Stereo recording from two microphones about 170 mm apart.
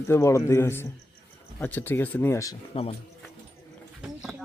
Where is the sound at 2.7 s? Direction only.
35° left (ahead or behind).